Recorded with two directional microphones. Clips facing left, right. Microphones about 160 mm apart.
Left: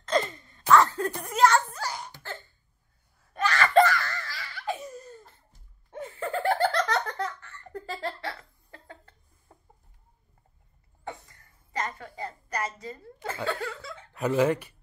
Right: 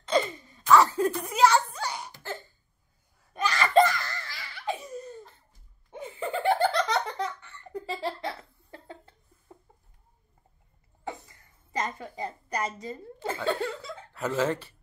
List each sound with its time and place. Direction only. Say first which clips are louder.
0.0 s a sound: right 1 dB; 5° right (ahead or behind)
3.3 s laughter: left 1 dB; 15° right (ahead or behind)
5.9 s laughter: even; 15° right (ahead or behind)
8.2 s laughter: right 2 dB; 20° right (ahead or behind)
11.1 s a sound: right 2 dB; 20° right (ahead or behind)
14.1 s speech: left 4 dB; 15° left (ahead or behind)